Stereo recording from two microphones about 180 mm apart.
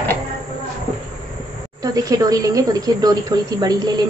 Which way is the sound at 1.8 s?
20° right (ahead or behind).